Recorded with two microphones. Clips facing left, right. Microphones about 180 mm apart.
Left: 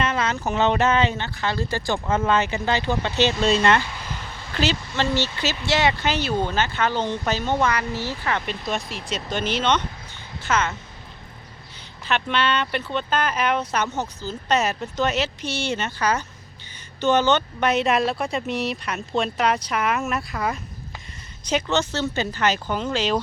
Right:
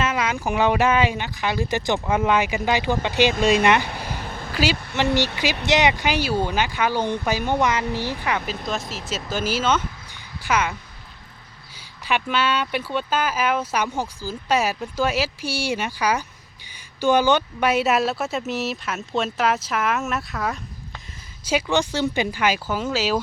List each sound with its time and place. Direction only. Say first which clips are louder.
0.0 s speech: even; 10° right (ahead or behind)
3.8 s a sound: right 4 dB; 60° right (ahead or behind)
4.5 s speech: right 1 dB; 10° right (ahead or behind)
8.4 s speech: even; centre (ahead or behind)
12.0 s speech: even; 10° right (ahead or behind)
21.4 s speech: right 1 dB; 10° right (ahead or behind)